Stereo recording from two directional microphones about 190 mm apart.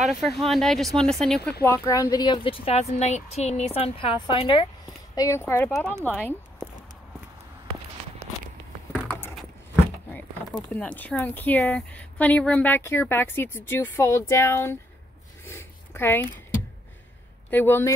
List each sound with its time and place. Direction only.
0.1 s speech: centre (ahead or behind)
1.6 s a woman's voice: 15° left (ahead or behind)
9.0 s keys jangling: 5° left (ahead or behind)
10.7 s a woman's voice: 10° left (ahead or behind)
15.4 s a sound: 10° left (ahead or behind)
17.5 s a woman's voice: 10° left (ahead or behind)